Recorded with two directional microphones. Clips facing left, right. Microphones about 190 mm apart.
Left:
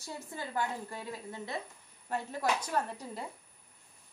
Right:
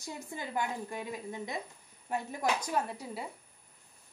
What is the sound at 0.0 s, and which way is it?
A woman's voice, 15° right (ahead or behind).